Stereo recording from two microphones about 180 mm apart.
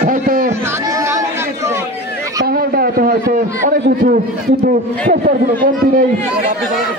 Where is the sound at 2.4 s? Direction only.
55° right (ahead or behind).